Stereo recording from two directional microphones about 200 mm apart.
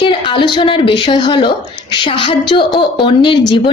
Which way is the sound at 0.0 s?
25° left (ahead or behind).